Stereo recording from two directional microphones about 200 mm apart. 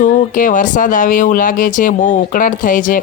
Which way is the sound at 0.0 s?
40° left (ahead or behind).